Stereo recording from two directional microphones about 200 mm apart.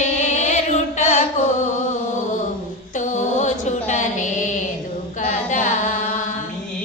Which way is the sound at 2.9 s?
40° left (ahead or behind).